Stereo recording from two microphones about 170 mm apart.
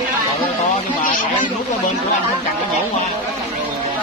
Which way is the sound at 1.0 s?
50° left (ahead or behind).